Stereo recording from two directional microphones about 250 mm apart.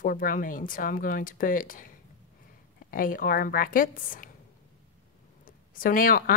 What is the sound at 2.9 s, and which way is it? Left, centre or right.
Speech, left.